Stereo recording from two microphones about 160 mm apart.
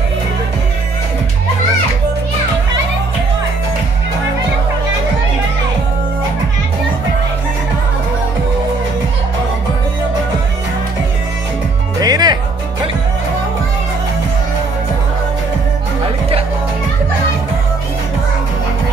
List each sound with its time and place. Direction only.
12.0 s music: 25° right (ahead or behind)